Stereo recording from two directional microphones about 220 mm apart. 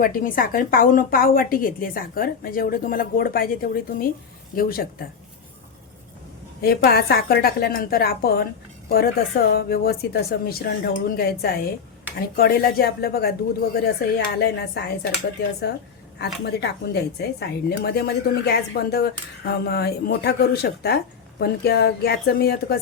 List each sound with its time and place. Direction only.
0.0 s a woman's voice: 40° left (ahead or behind)
6.6 s speech: 45° left (ahead or behind)
16.1 s speech: 50° left (ahead or behind)